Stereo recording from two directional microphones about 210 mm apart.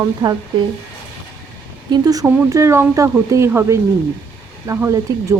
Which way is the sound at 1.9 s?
15° right (ahead or behind).